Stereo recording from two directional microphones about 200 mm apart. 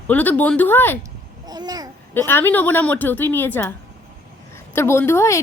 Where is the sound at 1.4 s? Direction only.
20° right (ahead or behind).